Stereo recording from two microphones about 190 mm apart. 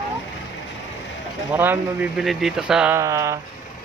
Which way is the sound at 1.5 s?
10° right (ahead or behind).